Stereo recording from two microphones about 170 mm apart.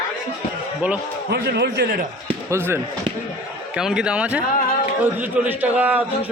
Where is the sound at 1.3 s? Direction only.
75° right (ahead or behind).